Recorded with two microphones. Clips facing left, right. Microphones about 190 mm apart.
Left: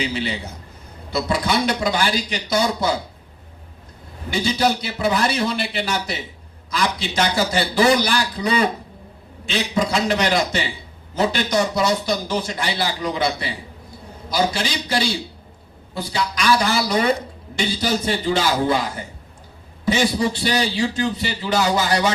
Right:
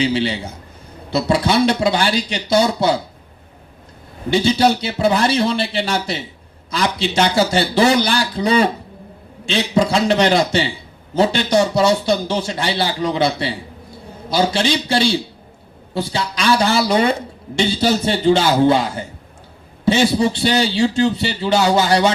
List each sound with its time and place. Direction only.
0.0 s a man's voice: 30° right (ahead or behind)
4.3 s a man's voice: 30° right (ahead or behind)